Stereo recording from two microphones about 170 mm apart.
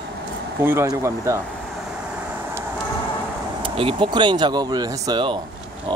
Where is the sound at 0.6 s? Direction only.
15° right (ahead or behind).